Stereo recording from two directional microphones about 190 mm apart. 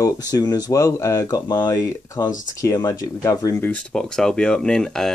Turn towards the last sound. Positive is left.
turn(degrees=0)  # may be behind; listen again after turning